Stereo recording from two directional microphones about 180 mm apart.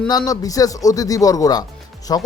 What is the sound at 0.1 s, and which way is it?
Speech, 20° left (ahead or behind).